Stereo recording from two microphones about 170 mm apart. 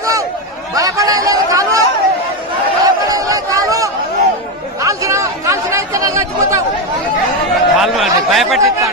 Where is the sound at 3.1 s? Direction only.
20° right (ahead or behind).